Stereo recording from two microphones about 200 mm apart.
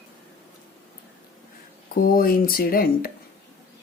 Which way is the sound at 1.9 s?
45° left (ahead or behind).